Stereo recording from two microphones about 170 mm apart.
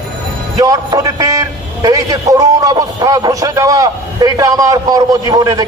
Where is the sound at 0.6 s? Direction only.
20° right (ahead or behind).